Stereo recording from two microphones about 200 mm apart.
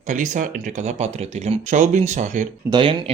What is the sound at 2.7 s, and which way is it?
Speech, 25° right (ahead or behind).